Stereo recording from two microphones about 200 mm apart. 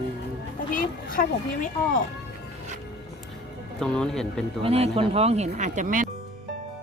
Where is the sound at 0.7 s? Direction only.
45° left (ahead or behind).